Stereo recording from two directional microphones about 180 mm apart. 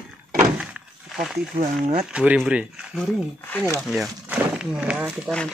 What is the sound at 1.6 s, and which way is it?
Speech, 40° right (ahead or behind).